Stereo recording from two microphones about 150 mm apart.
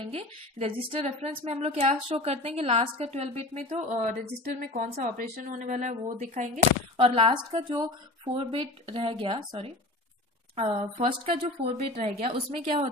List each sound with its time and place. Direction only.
0.1 s a woman's voice: 40° right (ahead or behind); by 6.6 s 55° right (ahead or behind)
7.0 s a woman's voice: 35° right (ahead or behind)